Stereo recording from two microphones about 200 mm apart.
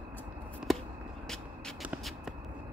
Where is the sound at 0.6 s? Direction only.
5° right (ahead or behind).